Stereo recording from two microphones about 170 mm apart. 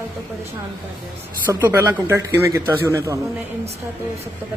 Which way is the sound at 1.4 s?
15° right (ahead or behind).